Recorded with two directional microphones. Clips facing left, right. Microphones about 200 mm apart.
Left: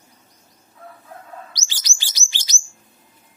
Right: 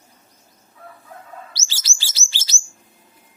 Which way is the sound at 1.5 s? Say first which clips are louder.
Even; 15° left (ahead or behind).